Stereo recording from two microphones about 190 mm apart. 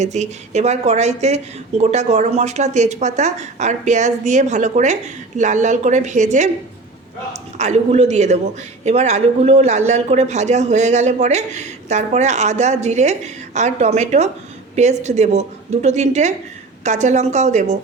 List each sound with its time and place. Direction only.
0.0 s speech: 35° right (ahead or behind)
7.6 s speech: 35° right (ahead or behind)